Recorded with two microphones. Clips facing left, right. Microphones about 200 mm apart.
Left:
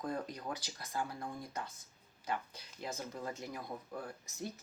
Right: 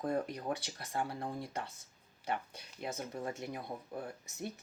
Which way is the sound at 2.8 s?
25° right (ahead or behind).